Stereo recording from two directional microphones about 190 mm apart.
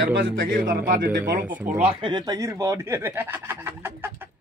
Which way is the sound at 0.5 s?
45° right (ahead or behind).